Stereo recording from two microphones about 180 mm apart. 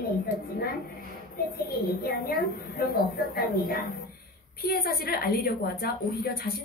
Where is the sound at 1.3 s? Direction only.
55° left (ahead or behind).